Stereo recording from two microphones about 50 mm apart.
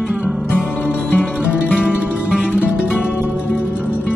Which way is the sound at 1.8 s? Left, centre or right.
Right.